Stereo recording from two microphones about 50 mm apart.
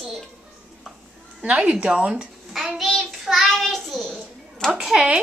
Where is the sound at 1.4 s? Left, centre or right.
Right.